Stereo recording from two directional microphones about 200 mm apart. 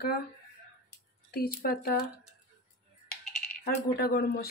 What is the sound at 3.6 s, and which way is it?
Speech, 50° left (ahead or behind).